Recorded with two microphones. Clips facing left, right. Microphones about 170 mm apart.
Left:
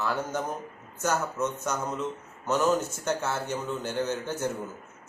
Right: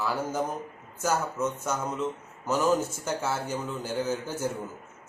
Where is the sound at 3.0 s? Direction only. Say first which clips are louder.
Left 1 dB; 10° right (ahead or behind).